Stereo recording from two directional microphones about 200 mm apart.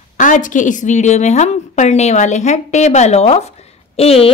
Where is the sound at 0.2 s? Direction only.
40° left (ahead or behind).